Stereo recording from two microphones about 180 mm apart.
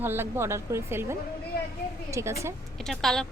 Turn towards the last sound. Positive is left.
turn(degrees=0)  # may be behind; listen again after turning